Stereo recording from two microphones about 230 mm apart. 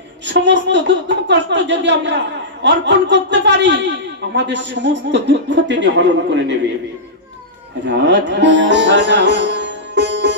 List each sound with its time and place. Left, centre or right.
0.3 s speech: right
7.8 s speech: right